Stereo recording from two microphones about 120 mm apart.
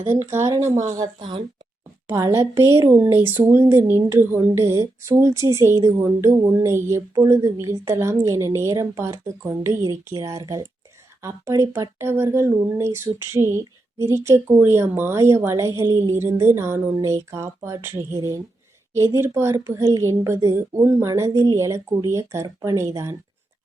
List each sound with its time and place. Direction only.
0.3 s speech: 20° right (ahead or behind)
0.9 s a woman's voice: 35° right (ahead or behind)
2.0 s speech: 25° right (ahead or behind)